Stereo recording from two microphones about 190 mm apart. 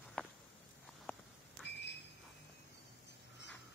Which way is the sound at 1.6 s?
65° left (ahead or behind).